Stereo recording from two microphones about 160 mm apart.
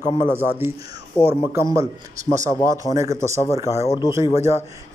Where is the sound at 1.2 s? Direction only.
10° left (ahead or behind).